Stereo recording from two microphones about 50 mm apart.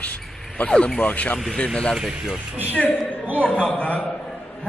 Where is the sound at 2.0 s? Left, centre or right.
Centre.